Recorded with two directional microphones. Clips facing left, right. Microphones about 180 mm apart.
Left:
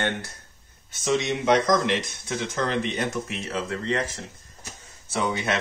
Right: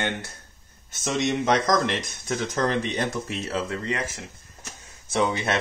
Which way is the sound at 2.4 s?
40° right (ahead or behind).